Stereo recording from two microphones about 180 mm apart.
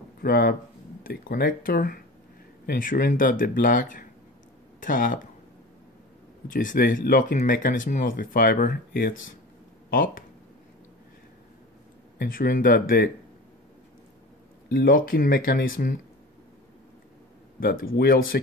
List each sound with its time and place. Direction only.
0.2 s speech: 60° left (ahead or behind)
6.5 s speech: 50° left (ahead or behind)
12.2 s speech: 50° left (ahead or behind)
14.7 s speech: 55° left (ahead or behind)
17.6 s speech: 55° left (ahead or behind)